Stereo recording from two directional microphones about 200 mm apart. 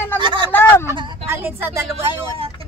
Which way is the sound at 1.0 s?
25° right (ahead or behind).